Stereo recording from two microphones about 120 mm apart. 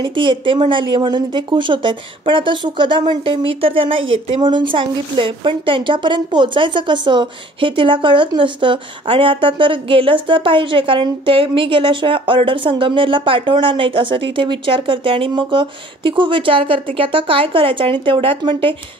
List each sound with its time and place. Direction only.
0.0 s speech: 45° right (ahead or behind)